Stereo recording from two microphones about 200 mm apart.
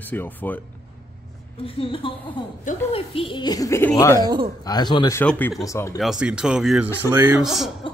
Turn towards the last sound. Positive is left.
turn(degrees=0)  # may be behind; listen again after turning